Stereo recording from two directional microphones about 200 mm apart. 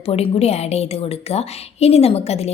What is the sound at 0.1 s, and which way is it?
A woman's voice, 30° left (ahead or behind).